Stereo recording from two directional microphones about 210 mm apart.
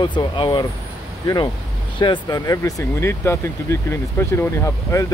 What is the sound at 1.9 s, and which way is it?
Speech, 20° left (ahead or behind).